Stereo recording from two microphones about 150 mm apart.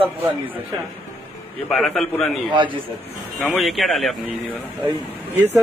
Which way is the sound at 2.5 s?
35° right (ahead or behind).